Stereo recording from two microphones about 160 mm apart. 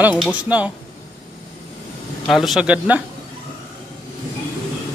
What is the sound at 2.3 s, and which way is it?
Speech, centre (ahead or behind).